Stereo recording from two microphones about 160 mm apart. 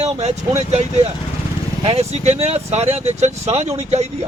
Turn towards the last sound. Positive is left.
turn(degrees=-45)  # may be behind; listen again after turning